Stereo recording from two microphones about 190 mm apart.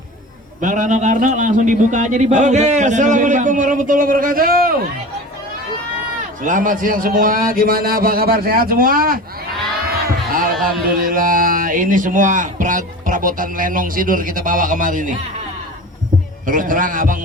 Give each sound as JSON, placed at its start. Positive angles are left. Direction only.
{"t": 0.6, "sound": "a man's voice", "side_deg": -40}
{"t": 6.4, "sound": "a man's voice", "side_deg": -45}
{"t": 16.5, "sound": "a man's voice", "side_deg": -45}